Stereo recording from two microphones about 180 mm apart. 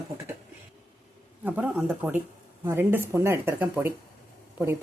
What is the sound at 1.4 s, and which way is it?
Speech, 10° right (ahead or behind).